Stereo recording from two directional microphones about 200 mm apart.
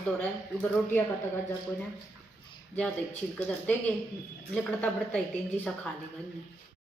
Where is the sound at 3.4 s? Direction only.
5° left (ahead or behind).